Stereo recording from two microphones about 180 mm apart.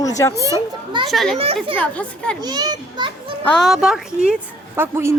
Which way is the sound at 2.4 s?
25° right (ahead or behind).